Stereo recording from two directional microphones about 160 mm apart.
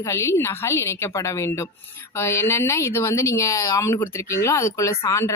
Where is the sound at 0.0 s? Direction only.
20° left (ahead or behind).